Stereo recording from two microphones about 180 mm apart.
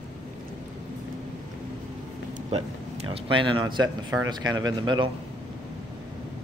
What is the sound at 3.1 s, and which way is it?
Speech, 30° right (ahead or behind).